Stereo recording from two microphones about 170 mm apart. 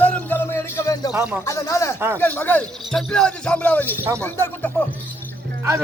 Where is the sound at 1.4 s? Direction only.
20° left (ahead or behind).